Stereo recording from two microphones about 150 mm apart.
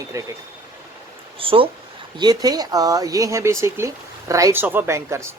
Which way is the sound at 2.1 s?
25° right (ahead or behind).